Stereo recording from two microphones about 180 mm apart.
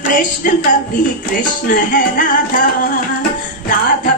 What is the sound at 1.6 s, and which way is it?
Music, 50° left (ahead or behind).